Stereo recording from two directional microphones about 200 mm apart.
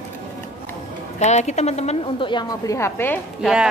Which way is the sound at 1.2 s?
35° left (ahead or behind).